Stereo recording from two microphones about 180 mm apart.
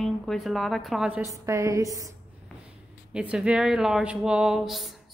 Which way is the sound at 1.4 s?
15° right (ahead or behind).